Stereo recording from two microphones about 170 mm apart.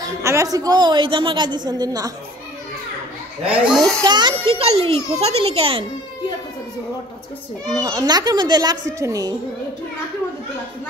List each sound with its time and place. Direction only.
0.0 s a woman's voice: 15° right (ahead or behind)
3.6 s a child's voice: centre (ahead or behind)
4.0 s a child's voice: 25° right (ahead or behind)
7.7 s a woman's voice: 20° right (ahead or behind)